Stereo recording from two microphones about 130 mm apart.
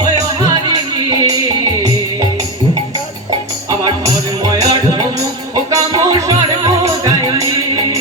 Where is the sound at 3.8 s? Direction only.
30° right (ahead or behind).